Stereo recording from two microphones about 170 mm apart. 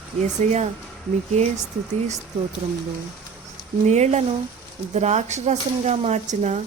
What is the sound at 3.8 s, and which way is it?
Speech, 40° right (ahead or behind).